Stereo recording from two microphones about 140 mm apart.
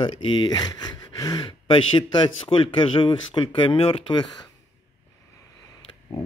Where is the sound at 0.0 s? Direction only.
35° left (ahead or behind).